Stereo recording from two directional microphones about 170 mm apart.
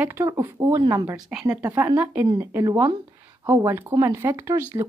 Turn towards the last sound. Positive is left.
turn(degrees=-15)  # may be behind; listen again after turning